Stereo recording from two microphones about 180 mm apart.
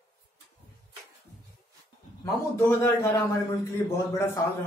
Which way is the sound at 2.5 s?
10° left (ahead or behind).